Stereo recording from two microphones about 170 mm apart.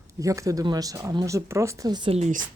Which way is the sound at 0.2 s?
20° right (ahead or behind).